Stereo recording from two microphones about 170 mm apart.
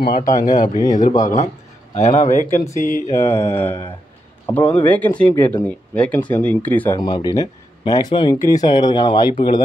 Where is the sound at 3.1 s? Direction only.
15° left (ahead or behind).